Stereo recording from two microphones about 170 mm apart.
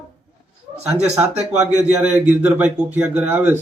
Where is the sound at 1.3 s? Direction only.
40° right (ahead or behind).